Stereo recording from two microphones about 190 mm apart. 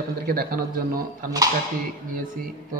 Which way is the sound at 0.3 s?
50° right (ahead or behind).